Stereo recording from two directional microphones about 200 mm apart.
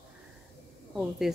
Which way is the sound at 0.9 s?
Centre (ahead or behind).